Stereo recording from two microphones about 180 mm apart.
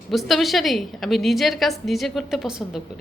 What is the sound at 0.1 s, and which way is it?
A woman's voice, centre (ahead or behind).